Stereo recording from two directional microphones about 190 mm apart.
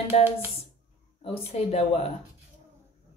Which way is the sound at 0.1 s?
35° left (ahead or behind).